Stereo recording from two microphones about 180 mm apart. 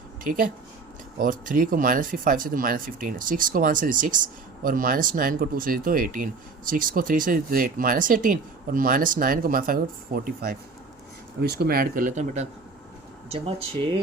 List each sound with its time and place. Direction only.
0.3 s speech: 50° right (ahead or behind)